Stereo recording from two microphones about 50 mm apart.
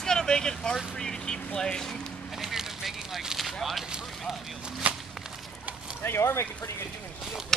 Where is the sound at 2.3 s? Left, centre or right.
Centre.